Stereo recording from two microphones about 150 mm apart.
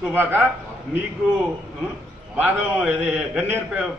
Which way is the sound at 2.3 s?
10° right (ahead or behind).